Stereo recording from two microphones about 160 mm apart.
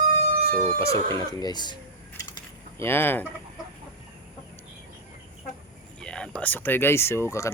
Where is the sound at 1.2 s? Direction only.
25° left (ahead or behind).